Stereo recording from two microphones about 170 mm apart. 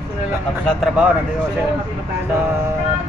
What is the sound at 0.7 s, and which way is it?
Speech, centre (ahead or behind).